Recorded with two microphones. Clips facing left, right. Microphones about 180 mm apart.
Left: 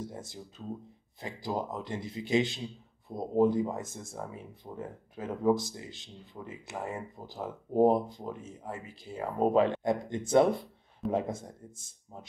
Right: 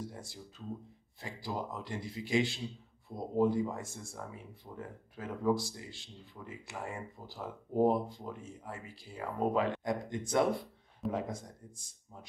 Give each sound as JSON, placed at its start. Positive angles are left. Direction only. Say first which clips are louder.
{"t": 0.0, "sound": "speech", "louder": "left 3 dB", "side_deg": 20}